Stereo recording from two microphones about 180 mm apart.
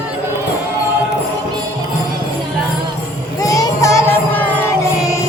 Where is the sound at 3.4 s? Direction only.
20° left (ahead or behind).